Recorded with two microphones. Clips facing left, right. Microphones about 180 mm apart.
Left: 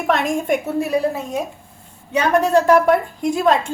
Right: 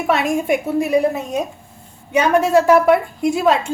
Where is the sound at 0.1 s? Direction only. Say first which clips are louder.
Right 1 dB; 5° right (ahead or behind).